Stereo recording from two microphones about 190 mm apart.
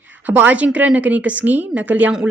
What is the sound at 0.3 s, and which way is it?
A woman's voice, 10° right (ahead or behind).